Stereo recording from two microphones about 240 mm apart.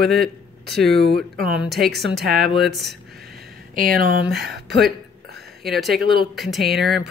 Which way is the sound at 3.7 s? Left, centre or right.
Right.